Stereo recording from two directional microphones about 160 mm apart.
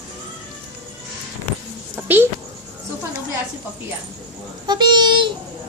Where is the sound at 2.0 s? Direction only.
10° right (ahead or behind).